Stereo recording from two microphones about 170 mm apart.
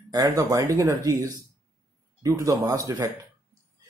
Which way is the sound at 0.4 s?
20° right (ahead or behind).